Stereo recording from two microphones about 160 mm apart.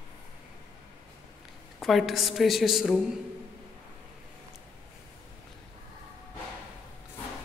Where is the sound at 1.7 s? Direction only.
Centre (ahead or behind).